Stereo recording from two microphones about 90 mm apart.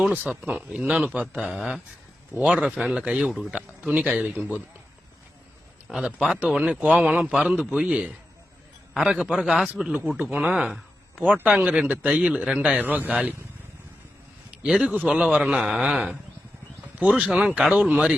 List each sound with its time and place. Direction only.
0.1 s a man's voice: 20° right (ahead or behind)
1.5 s a man's voice: 5° right (ahead or behind)
3.5 s a man's voice: 15° right (ahead or behind)
5.9 s a man's voice: 10° right (ahead or behind)
9.9 s a man's voice: 15° right (ahead or behind)
11.2 s a man's voice: 15° right (ahead or behind)
14.7 s a man's voice: 5° right (ahead or behind)